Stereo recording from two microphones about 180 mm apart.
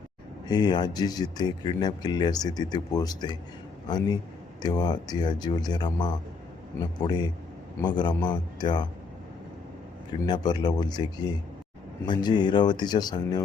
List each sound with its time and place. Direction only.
0.4 s speech: 20° left (ahead or behind)
10.2 s speech: 25° left (ahead or behind)